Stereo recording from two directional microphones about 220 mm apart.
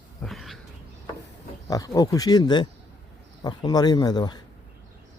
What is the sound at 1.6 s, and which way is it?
Speech, 15° left (ahead or behind).